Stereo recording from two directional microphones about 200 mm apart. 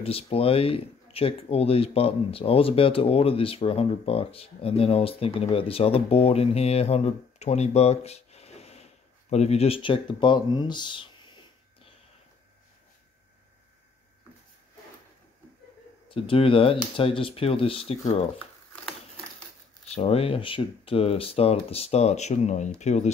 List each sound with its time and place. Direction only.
0.0 s speech: 30° left (ahead or behind)
16.1 s speech: 25° left (ahead or behind)
19.9 s speech: 30° left (ahead or behind)